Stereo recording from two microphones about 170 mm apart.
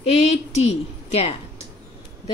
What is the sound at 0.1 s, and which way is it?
A woman's voice, 40° left (ahead or behind).